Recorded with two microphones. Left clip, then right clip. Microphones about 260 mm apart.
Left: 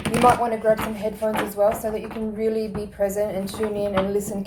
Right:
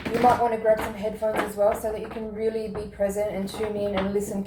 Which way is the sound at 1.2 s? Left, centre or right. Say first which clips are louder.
Left 2 dB; left.